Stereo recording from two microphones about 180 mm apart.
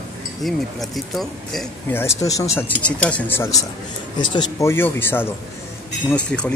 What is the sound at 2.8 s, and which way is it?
Speech, 5° left (ahead or behind).